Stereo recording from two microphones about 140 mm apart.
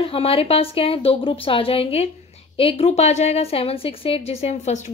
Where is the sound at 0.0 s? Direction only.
45° left (ahead or behind).